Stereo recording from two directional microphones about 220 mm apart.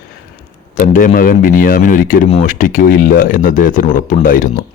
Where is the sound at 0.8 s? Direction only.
35° left (ahead or behind).